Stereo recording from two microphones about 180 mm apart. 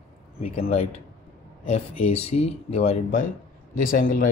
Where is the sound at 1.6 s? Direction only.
35° left (ahead or behind).